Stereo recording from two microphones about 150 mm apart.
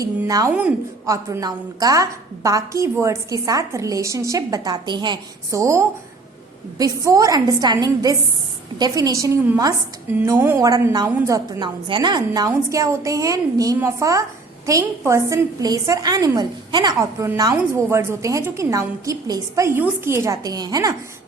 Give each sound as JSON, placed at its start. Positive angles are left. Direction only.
{"t": 0.3, "sound": "a woman's voice", "side_deg": -25}